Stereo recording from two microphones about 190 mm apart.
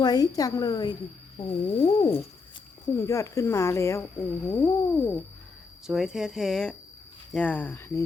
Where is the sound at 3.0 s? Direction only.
15° left (ahead or behind).